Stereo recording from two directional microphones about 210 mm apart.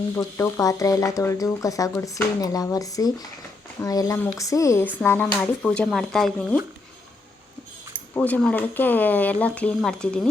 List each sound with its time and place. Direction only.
0.2 s speech: 15° left (ahead or behind)
8.1 s speech: 10° left (ahead or behind)